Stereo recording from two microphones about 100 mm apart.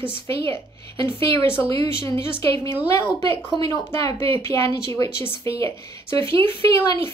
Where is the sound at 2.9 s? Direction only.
30° left (ahead or behind).